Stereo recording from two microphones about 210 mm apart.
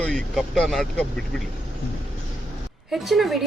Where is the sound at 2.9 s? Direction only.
Centre (ahead or behind).